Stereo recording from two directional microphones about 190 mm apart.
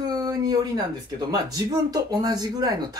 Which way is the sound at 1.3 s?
20° right (ahead or behind).